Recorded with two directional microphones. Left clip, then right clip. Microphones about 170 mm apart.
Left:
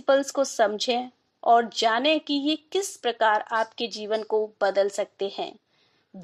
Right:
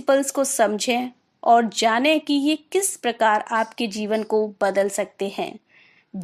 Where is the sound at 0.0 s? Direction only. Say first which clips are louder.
Right 2 dB; 30° right (ahead or behind).